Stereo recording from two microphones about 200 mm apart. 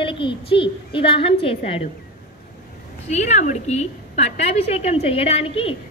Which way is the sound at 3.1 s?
35° left (ahead or behind).